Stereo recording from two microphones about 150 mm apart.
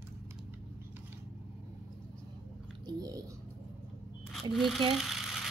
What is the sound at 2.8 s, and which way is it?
Speech, 25° right (ahead or behind).